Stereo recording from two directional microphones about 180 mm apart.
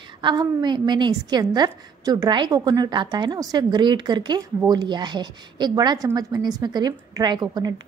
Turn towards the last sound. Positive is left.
turn(degrees=-20)  # may be behind; listen again after turning